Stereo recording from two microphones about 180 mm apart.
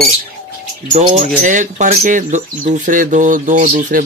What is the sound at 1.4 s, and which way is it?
Speech, 45° right (ahead or behind).